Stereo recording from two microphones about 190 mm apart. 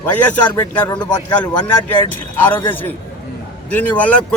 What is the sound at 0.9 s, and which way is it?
Speech, 20° left (ahead or behind).